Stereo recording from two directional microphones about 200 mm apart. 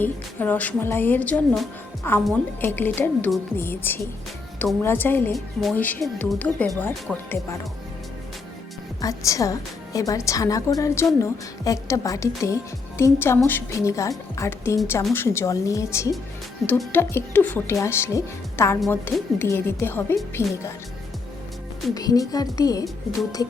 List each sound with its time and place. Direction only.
0.0 s a woman's voice: 10° left (ahead or behind)
9.0 s a woman's voice: 15° left (ahead or behind)
16.6 s a woman's voice: 5° left (ahead or behind)
21.9 s a woman's voice: 20° left (ahead or behind)